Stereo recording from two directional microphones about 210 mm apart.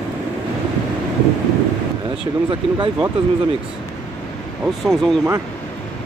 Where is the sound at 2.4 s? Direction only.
20° right (ahead or behind).